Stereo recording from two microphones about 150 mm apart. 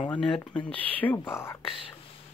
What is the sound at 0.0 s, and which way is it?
Speech, 5° left (ahead or behind).